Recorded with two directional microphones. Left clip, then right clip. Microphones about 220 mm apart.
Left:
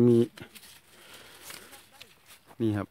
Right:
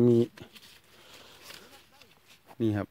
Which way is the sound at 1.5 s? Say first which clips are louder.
Left 2 dB; 25° left (ahead or behind).